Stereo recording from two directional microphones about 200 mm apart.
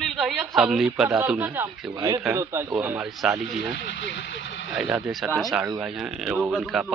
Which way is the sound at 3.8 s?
65° left (ahead or behind).